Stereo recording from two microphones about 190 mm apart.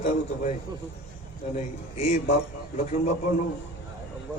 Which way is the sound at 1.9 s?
35° left (ahead or behind).